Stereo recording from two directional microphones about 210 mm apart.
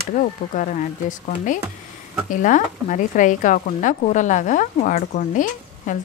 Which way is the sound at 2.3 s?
40° left (ahead or behind).